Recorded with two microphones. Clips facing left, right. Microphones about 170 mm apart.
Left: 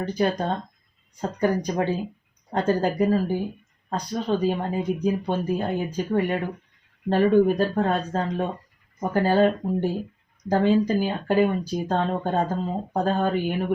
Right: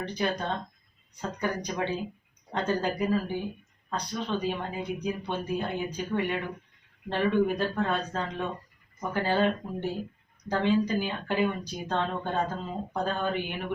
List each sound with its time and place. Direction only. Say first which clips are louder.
0.0 s speech: left 6 dB; 45° left (ahead or behind)
10.5 s speech: left 5 dB; 40° left (ahead or behind)